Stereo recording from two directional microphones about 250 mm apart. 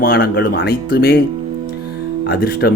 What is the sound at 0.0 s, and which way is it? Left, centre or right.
Speech, left.